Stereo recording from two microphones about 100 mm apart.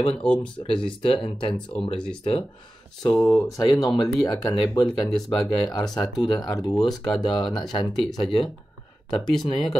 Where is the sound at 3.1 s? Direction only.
20° left (ahead or behind).